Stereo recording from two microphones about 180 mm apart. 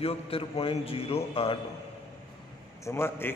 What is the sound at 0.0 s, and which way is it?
A man's voice, 30° left (ahead or behind).